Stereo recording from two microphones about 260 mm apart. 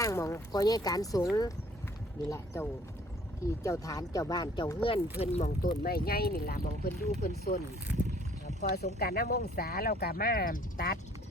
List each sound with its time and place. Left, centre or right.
0.0 s speech: centre
2.3 s speech: centre; by 7.6 s left
7.9 s speech: centre
8.7 s speech: left